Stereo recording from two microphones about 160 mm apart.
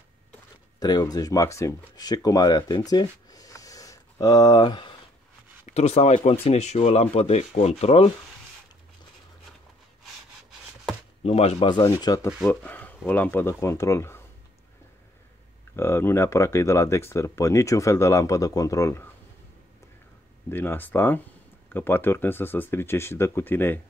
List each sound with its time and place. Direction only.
0.7 s speech: 25° left (ahead or behind)
5.7 s speech: 45° left (ahead or behind)
11.2 s speech: 40° left (ahead or behind)
12.4 s speech: 10° left (ahead or behind)
15.7 s speech: 15° left (ahead or behind)
20.4 s speech: 15° left (ahead or behind)